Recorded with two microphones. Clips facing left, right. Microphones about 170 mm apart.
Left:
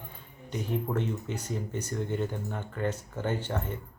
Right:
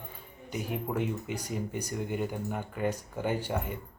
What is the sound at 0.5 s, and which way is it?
Speech, 10° right (ahead or behind).